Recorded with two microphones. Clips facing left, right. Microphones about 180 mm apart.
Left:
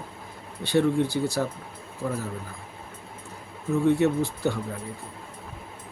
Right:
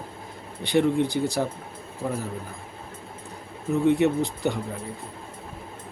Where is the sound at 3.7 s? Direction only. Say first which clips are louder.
Right 1 dB; 15° right (ahead or behind).